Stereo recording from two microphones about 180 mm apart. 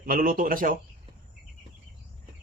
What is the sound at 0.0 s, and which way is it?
Speech, 50° right (ahead or behind).